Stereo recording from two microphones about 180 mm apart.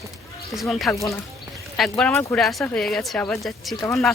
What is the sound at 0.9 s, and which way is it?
Speech, 15° left (ahead or behind).